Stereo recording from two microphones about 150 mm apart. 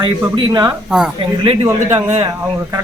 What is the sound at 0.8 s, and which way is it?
Speech, 5° right (ahead or behind).